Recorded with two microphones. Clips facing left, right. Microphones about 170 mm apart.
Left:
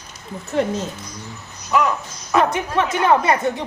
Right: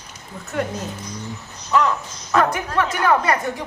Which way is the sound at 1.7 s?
10° left (ahead or behind).